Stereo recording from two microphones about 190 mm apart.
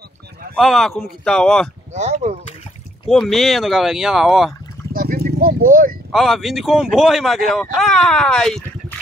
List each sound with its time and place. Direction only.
0.6 s speech: centre (ahead or behind)
2.0 s speech: 35° right (ahead or behind)
3.1 s speech: centre (ahead or behind)
4.9 s vehicle: 50° right (ahead or behind)
6.1 s speech: centre (ahead or behind)